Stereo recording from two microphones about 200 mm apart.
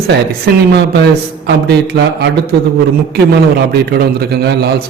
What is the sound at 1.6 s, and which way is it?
Speech, 55° right (ahead or behind).